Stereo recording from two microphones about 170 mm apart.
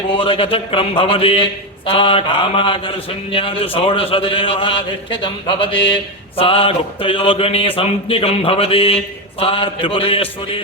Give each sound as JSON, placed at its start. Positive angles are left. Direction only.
{"t": 0.1, "sound": "a man's voice", "side_deg": 30}